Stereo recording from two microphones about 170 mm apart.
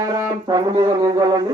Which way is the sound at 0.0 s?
20° right (ahead or behind).